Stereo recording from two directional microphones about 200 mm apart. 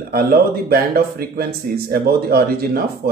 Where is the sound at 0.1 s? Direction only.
50° right (ahead or behind).